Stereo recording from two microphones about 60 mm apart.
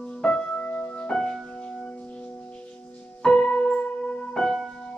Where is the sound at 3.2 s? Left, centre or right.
Centre.